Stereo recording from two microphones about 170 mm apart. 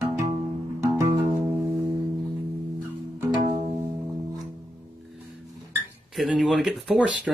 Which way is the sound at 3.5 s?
35° right (ahead or behind).